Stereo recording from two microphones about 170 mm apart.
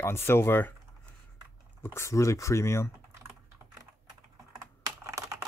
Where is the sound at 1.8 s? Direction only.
15° left (ahead or behind).